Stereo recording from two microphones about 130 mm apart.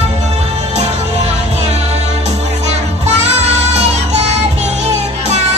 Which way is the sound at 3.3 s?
60° right (ahead or behind).